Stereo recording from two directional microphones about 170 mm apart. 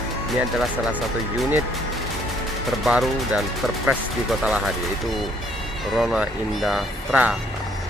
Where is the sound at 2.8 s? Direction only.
Centre (ahead or behind).